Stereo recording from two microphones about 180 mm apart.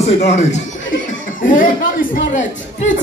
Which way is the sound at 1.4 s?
50° left (ahead or behind).